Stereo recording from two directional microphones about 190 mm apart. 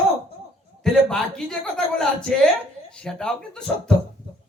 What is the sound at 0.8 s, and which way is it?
A man's voice, 5° left (ahead or behind).